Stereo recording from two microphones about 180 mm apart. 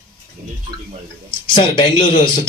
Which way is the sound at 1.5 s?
25° left (ahead or behind).